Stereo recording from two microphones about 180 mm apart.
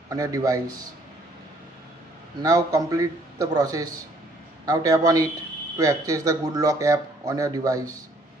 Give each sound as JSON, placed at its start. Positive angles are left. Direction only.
{"t": 0.1, "sound": "speech", "side_deg": -20}
{"t": 2.4, "sound": "speech", "side_deg": -20}